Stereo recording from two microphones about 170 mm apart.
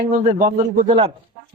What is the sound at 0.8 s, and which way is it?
Speech, 35° right (ahead or behind).